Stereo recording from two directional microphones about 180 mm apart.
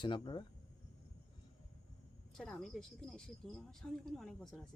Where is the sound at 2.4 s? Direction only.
5° left (ahead or behind).